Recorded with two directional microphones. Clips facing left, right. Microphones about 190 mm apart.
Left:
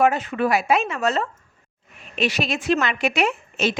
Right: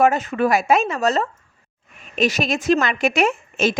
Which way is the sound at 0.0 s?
45° right (ahead or behind).